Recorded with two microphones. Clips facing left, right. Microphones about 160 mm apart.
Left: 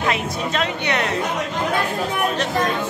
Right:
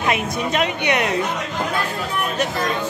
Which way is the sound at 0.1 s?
15° right (ahead or behind).